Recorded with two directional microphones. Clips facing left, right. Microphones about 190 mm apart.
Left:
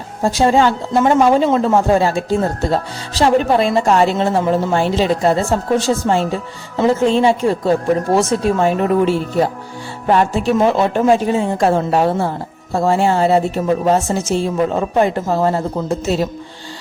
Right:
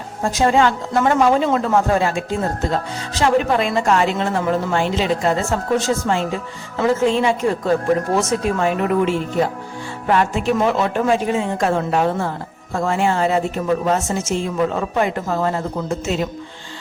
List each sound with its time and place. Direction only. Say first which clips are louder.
0.2 s speech: left 3 dB; 30° left (ahead or behind)